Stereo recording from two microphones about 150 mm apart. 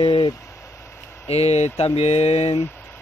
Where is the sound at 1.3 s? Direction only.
45° left (ahead or behind).